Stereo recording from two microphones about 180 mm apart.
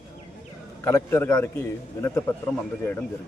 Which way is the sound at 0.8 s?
15° left (ahead or behind).